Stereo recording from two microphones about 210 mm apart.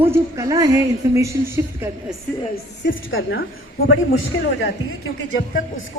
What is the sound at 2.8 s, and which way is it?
Speech, 65° left (ahead or behind).